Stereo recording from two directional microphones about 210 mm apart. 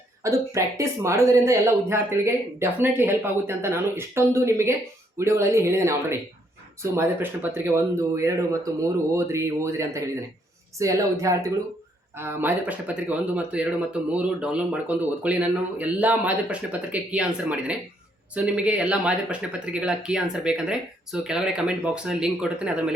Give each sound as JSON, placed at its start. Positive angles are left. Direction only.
{"t": 0.2, "sound": "speech", "side_deg": -15}